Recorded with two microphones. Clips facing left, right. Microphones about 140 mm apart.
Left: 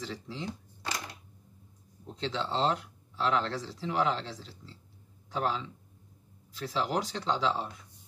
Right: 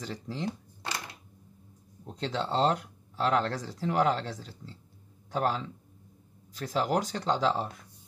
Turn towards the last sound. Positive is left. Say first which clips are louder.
# right 3 dB
turn(degrees=-45)  # may be behind; listen again after turning